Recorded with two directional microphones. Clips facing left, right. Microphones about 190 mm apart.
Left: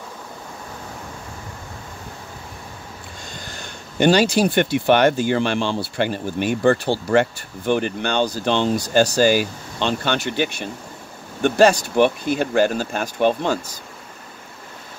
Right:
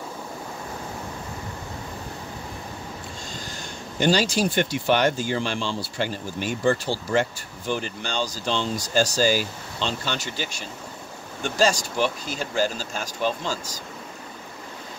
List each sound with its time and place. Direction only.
4.0 s speech: 60° left (ahead or behind)